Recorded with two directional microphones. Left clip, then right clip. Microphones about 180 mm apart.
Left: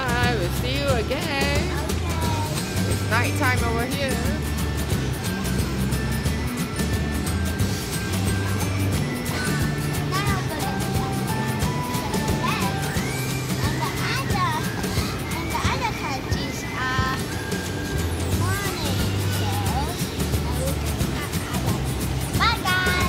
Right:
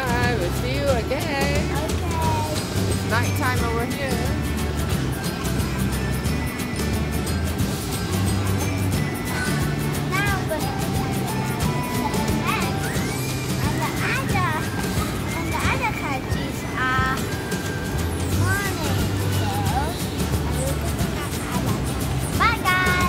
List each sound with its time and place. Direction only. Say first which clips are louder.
3.1 s music: left 2 dB; 45° left (ahead or behind)
16.8 s music: right 3 dB; 5° right (ahead or behind)
22.4 s music: right 2 dB; centre (ahead or behind)